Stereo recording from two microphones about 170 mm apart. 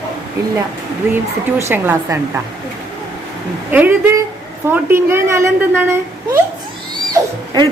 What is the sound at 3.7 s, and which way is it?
A woman's voice, 10° right (ahead or behind).